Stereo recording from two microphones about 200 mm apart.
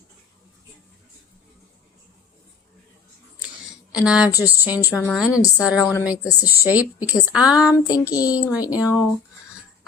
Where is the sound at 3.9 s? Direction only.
5° right (ahead or behind).